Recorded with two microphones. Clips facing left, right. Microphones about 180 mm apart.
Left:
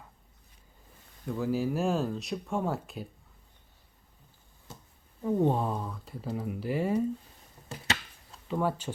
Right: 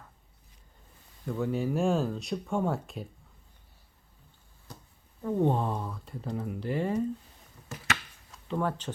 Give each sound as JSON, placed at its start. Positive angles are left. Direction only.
{"t": 1.2, "sound": "speech", "side_deg": 0}
{"t": 4.7, "sound": "a sound", "side_deg": 25}
{"t": 5.2, "sound": "speech", "side_deg": 5}
{"t": 7.7, "sound": "chopping", "side_deg": 30}
{"t": 8.4, "sound": "speech", "side_deg": 10}